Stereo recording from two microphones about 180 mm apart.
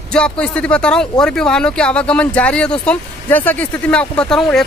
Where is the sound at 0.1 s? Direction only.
5° left (ahead or behind).